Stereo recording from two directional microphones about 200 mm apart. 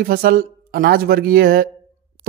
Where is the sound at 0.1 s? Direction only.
45° right (ahead or behind).